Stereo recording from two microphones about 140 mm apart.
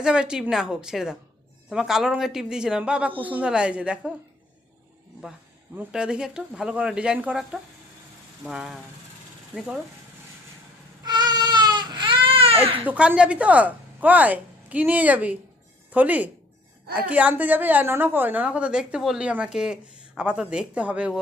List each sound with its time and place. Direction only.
0.0 s a woman's voice: 5° right (ahead or behind)
5.7 s a woman's voice: 5° right (ahead or behind)
11.0 s baby cry: 30° right (ahead or behind)
12.8 s a woman's voice: 10° right (ahead or behind)